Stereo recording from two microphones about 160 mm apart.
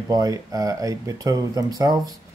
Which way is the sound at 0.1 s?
25° right (ahead or behind).